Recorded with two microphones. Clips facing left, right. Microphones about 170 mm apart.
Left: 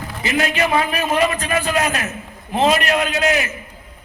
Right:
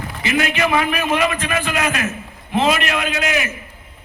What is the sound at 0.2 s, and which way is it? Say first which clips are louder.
A man's voice: even; 35° left (ahead or behind).